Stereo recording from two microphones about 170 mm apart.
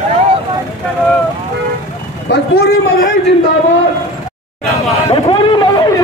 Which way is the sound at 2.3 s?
90° left.